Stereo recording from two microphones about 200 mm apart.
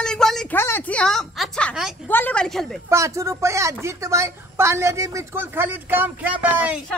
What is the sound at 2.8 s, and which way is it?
Speech, 15° right (ahead or behind).